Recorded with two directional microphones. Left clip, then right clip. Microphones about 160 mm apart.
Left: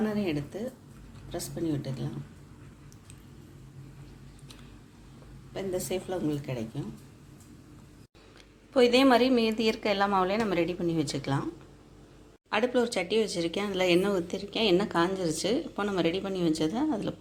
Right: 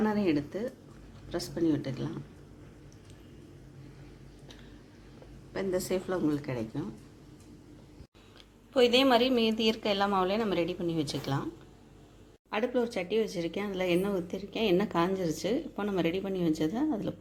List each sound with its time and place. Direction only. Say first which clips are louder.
0.0 s speech: right 2 dB; 30° right (ahead or behind)
5.9 s speech: right 1 dB; 25° right (ahead or behind)
8.7 s a woman's voice: left 2 dB; centre (ahead or behind)
12.5 s speech: left 4 dB; 5° right (ahead or behind)